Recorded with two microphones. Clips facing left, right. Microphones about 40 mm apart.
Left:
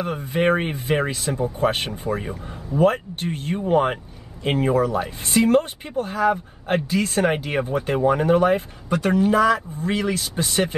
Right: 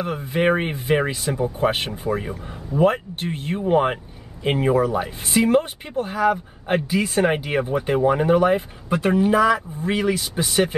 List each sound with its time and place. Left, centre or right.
0.0 s speech: centre
7.2 s speech: centre
8.9 s speech: centre